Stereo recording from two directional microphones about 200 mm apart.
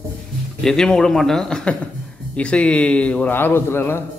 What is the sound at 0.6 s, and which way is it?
A man's voice, 5° left (ahead or behind).